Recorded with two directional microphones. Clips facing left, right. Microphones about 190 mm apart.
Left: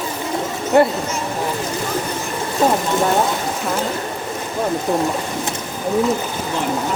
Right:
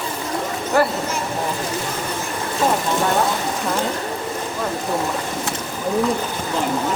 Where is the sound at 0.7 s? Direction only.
25° left (ahead or behind).